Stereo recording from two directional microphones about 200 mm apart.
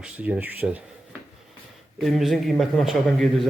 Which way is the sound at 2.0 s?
Centre (ahead or behind).